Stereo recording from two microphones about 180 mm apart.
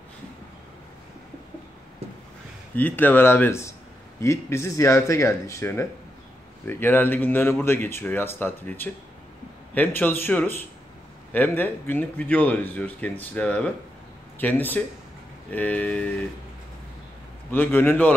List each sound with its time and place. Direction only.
2.7 s speech: 10° left (ahead or behind)
17.5 s speech: 10° left (ahead or behind)